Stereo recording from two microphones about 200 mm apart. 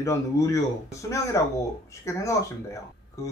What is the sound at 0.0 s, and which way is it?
Speech, 15° left (ahead or behind).